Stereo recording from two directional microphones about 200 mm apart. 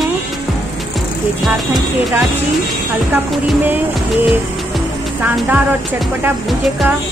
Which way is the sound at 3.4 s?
10° right (ahead or behind).